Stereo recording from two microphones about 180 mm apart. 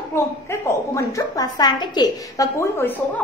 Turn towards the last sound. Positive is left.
turn(degrees=10)  # may be behind; listen again after turning